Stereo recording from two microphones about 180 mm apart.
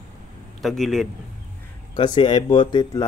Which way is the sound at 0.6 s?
Centre (ahead or behind).